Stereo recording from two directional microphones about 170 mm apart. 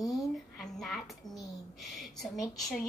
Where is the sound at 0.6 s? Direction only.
Centre (ahead or behind).